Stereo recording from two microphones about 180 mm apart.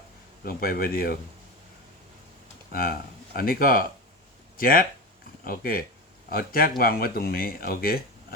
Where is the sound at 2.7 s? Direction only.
55° left (ahead or behind).